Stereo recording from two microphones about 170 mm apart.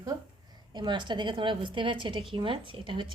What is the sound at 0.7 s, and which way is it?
A woman's voice, 25° right (ahead or behind).